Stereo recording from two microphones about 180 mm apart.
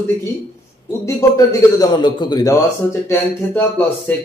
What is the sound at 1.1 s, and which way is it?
A man's voice, 20° left (ahead or behind).